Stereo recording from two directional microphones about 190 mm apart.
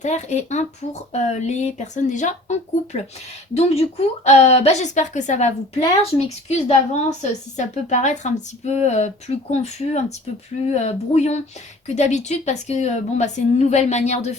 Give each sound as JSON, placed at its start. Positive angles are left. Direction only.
{"t": 0.0, "sound": "a woman's voice", "side_deg": 35}